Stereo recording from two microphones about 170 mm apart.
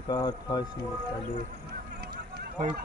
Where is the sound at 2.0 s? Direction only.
65° right (ahead or behind).